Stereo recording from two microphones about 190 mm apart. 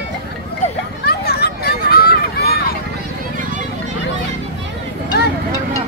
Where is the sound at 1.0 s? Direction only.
55° left (ahead or behind).